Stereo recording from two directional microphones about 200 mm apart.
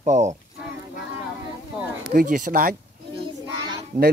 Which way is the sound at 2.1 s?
40° right (ahead or behind).